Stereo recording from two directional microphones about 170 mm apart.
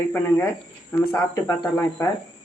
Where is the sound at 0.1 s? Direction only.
10° left (ahead or behind).